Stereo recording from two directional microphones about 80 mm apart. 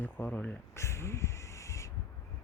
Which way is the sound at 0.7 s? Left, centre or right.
Left.